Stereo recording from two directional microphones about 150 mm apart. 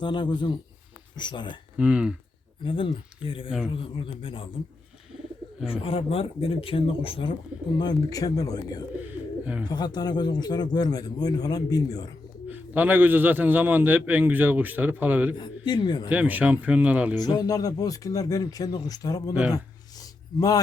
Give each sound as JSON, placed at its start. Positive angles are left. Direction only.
{"t": 0.0, "sound": "speech", "side_deg": 30}
{"t": 1.8, "sound": "a man's voice", "side_deg": -10}
{"t": 2.6, "sound": "speech", "side_deg": 35}
{"t": 5.8, "sound": "speech", "side_deg": 40}
{"t": 12.5, "sound": "a man's voice", "side_deg": -10}
{"t": 15.4, "sound": "speech", "side_deg": 30}
{"t": 16.0, "sound": "a man's voice", "side_deg": -10}
{"t": 17.2, "sound": "speech", "side_deg": 25}
{"t": 20.0, "sound": "gasp", "side_deg": 25}